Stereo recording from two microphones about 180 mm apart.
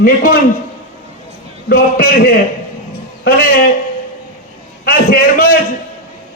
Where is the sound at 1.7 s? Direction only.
55° left (ahead or behind).